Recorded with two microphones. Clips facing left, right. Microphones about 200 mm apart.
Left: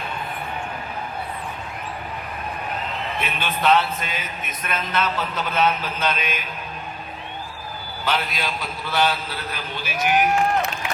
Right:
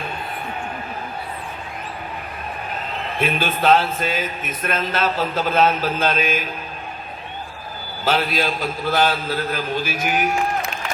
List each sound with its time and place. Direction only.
3.2 s a man's voice: 45° right (ahead or behind)
8.0 s a man's voice: 40° right (ahead or behind)